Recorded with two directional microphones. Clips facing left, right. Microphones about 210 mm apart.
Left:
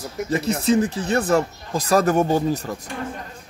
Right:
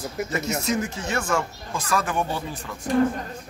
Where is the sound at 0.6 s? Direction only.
35° left (ahead or behind).